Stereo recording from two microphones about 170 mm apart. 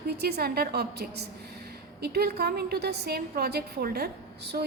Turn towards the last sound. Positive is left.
turn(degrees=-70)  # may be behind; listen again after turning